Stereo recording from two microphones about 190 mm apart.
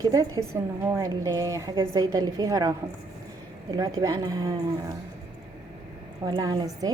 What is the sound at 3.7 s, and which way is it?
Speech, 20° right (ahead or behind).